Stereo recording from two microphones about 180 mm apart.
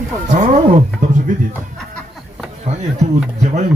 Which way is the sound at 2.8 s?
40° right (ahead or behind).